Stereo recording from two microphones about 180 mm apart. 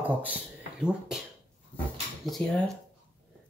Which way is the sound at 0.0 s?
10° right (ahead or behind).